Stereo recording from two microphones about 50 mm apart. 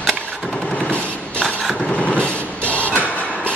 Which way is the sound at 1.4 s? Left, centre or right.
Centre.